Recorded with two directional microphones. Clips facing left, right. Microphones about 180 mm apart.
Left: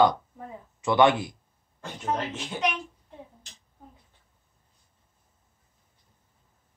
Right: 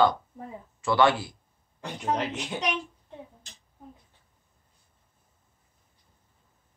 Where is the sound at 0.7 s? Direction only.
20° left (ahead or behind).